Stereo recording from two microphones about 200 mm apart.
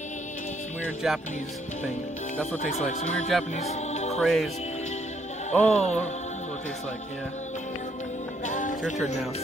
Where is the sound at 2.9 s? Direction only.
35° left (ahead or behind).